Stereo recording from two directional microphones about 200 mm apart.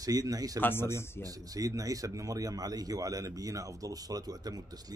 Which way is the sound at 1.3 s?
15° right (ahead or behind).